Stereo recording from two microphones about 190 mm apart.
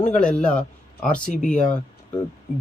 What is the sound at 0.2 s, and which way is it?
Speech, 5° left (ahead or behind).